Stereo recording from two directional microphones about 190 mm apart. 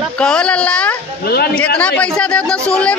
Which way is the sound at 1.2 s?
55° left (ahead or behind).